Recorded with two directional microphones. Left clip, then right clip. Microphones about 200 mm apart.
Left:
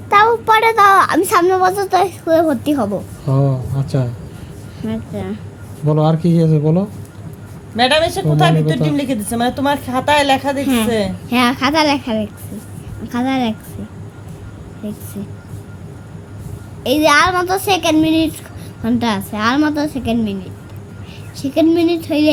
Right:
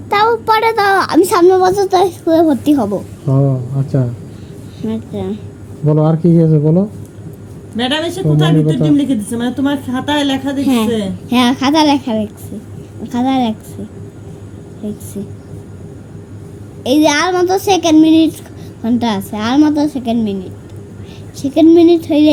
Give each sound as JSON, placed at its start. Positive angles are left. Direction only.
{"t": 0.1, "sound": "a child's voice", "side_deg": 0}
{"t": 7.8, "sound": "a woman's voice", "side_deg": 50}
{"t": 10.6, "sound": "a child's voice", "side_deg": -5}
{"t": 14.8, "sound": "a child's voice", "side_deg": 0}
{"t": 16.8, "sound": "a child's voice", "side_deg": 0}